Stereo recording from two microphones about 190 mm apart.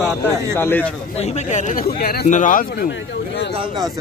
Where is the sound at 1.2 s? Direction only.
35° left (ahead or behind).